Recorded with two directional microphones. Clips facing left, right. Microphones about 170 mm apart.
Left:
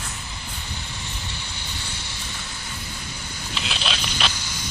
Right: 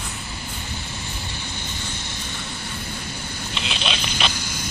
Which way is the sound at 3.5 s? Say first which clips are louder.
Right 1 dB; centre (ahead or behind).